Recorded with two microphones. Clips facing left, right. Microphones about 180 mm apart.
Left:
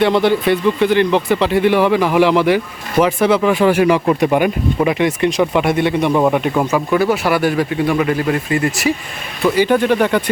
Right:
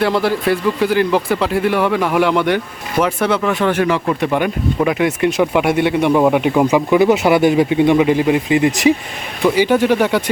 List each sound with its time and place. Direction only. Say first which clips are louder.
0.0 s speech: left 2 dB; centre (ahead or behind)